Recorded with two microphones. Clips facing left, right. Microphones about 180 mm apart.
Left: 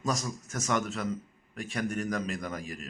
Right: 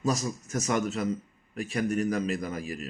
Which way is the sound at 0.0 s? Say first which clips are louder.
Right 4 dB; 10° right (ahead or behind).